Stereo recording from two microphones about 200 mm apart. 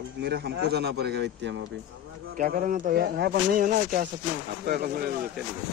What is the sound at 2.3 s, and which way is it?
Speech, 45° right (ahead or behind).